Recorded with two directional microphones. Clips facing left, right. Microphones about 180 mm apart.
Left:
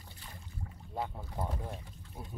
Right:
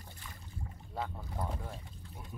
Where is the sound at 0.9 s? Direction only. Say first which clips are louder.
Left 1 dB; 15° left (ahead or behind).